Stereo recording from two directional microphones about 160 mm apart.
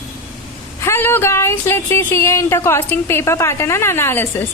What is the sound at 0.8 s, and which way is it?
Speech, 15° left (ahead or behind).